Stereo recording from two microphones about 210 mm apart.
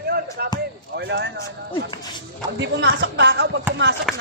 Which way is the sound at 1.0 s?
55° right (ahead or behind).